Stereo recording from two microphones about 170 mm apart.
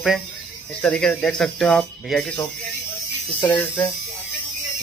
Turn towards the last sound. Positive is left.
turn(degrees=10)  # may be behind; listen again after turning